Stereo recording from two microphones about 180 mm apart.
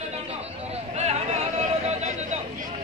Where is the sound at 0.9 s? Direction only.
40° right (ahead or behind).